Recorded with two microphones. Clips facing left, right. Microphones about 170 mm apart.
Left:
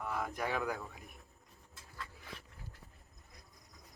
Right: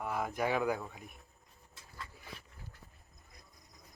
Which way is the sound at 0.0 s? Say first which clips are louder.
Right 3 dB; 5° right (ahead or behind).